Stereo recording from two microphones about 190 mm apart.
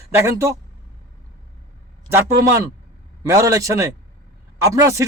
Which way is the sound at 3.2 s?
15° right (ahead or behind).